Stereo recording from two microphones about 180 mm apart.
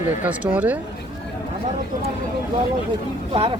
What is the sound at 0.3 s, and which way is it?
Speech, 10° right (ahead or behind).